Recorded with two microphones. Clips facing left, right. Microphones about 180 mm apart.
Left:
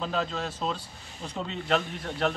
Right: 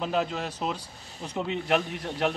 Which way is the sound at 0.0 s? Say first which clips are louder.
Right 2 dB; 15° right (ahead or behind).